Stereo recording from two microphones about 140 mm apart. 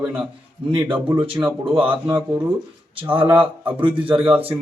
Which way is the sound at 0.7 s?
40° right (ahead or behind).